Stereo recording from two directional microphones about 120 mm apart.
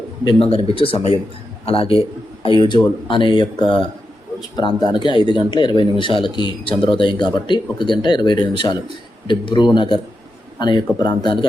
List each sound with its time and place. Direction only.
0.3 s a man's voice: 50° left (ahead or behind)